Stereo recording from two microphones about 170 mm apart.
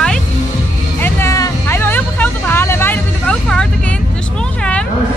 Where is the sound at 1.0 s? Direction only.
15° left (ahead or behind).